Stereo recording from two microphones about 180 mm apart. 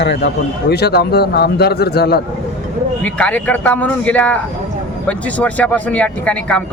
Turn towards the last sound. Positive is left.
turn(degrees=5)  # may be behind; listen again after turning